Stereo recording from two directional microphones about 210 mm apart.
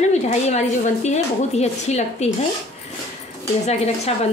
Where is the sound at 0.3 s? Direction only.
35° left (ahead or behind).